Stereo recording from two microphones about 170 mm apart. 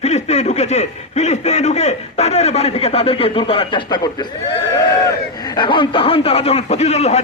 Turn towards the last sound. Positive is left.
turn(degrees=40)  # may be behind; listen again after turning